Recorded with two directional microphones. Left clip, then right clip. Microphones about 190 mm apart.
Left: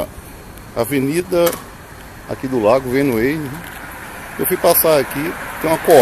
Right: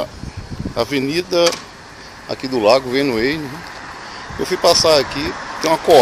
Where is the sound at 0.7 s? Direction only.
Centre (ahead or behind).